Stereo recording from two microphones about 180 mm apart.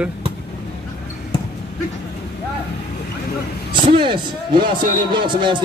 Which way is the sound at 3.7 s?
30° right (ahead or behind).